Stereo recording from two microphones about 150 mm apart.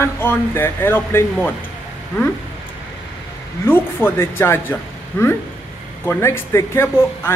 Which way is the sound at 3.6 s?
15° left (ahead or behind).